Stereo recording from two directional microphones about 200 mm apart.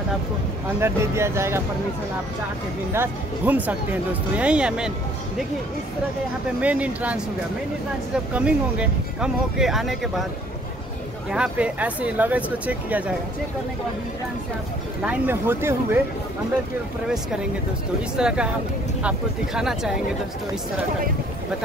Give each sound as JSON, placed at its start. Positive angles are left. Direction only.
{"t": 0.7, "sound": "speech", "side_deg": -15}
{"t": 2.9, "sound": "speech", "side_deg": -10}
{"t": 6.6, "sound": "speech", "side_deg": -5}
{"t": 8.3, "sound": "speech", "side_deg": -5}
{"t": 11.2, "sound": "speech", "side_deg": -5}
{"t": 15.0, "sound": "speech", "side_deg": -10}
{"t": 18.1, "sound": "speech", "side_deg": -5}